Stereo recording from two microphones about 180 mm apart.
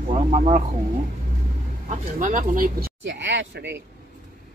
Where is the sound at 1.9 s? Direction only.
45° right (ahead or behind).